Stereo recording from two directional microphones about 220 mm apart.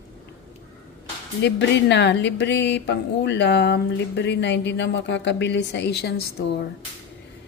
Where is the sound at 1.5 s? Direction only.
55° left (ahead or behind).